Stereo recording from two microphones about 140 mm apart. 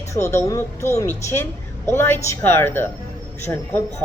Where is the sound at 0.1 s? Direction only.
20° left (ahead or behind).